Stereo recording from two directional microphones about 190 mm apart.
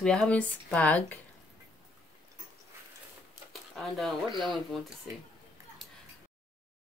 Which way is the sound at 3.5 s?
Centre (ahead or behind).